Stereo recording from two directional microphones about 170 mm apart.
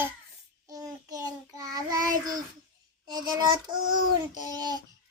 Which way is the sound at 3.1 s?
25° right (ahead or behind).